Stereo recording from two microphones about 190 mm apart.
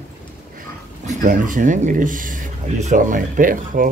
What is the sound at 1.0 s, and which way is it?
Speech, 45° right (ahead or behind).